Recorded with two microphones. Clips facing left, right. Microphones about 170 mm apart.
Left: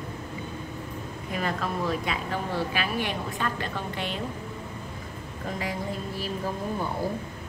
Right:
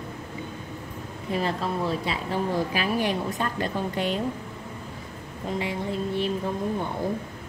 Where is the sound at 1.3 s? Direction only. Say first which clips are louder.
Right 3 dB; 30° right (ahead or behind).